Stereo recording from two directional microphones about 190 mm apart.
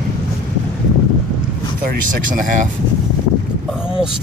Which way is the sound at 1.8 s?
45° right (ahead or behind).